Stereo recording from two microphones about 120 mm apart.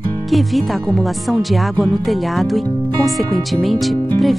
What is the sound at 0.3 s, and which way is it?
Speech, centre (ahead or behind).